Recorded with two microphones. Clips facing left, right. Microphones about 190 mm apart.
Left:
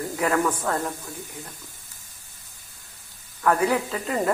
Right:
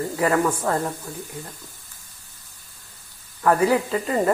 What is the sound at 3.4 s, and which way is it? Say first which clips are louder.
Speech: right 3 dB; 5° right (ahead or behind).